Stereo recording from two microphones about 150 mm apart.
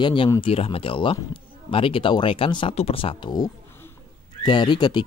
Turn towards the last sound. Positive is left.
turn(degrees=30)  # may be behind; listen again after turning